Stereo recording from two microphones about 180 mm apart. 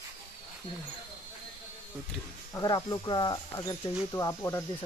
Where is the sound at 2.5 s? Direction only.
20° left (ahead or behind).